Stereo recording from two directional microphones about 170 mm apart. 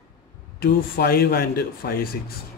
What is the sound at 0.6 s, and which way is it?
A man's voice, 65° left (ahead or behind).